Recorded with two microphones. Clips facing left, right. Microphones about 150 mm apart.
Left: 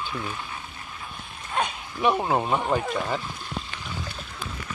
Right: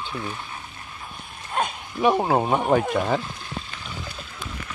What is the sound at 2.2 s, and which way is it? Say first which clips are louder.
Speech: right 3 dB; 30° right (ahead or behind).